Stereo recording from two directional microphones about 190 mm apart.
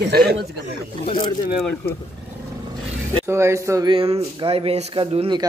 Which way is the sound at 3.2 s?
15° right (ahead or behind).